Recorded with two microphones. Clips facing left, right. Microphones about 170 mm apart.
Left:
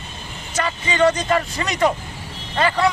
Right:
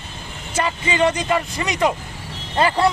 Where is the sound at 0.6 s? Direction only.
20° right (ahead or behind).